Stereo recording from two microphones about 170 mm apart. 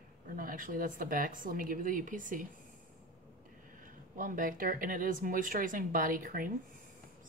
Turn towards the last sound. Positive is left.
turn(degrees=-55)  # may be behind; listen again after turning